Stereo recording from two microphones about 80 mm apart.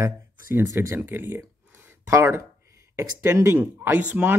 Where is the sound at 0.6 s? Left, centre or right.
Right.